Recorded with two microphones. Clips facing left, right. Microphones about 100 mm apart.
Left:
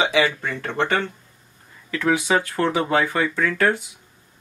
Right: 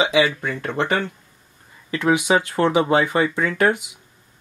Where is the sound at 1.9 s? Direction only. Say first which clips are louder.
Right 2 dB; 20° right (ahead or behind).